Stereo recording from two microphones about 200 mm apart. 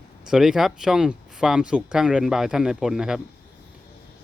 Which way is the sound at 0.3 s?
Centre (ahead or behind).